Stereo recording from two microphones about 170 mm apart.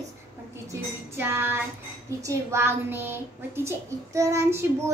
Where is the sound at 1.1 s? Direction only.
15° right (ahead or behind).